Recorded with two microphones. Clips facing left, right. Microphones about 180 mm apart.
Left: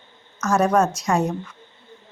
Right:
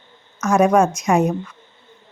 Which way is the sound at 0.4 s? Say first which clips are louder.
Right 4 dB; 15° right (ahead or behind).